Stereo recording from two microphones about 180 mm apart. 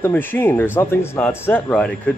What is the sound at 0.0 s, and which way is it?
Speech, 10° left (ahead or behind).